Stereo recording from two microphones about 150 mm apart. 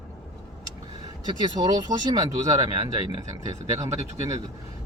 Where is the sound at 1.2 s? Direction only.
25° right (ahead or behind).